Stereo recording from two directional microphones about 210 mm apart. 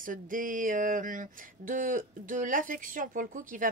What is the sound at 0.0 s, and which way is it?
Speech, 40° right (ahead or behind).